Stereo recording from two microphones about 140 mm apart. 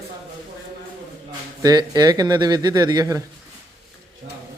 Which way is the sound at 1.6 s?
25° right (ahead or behind).